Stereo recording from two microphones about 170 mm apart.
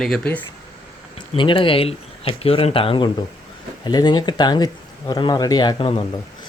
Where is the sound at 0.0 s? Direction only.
5° left (ahead or behind).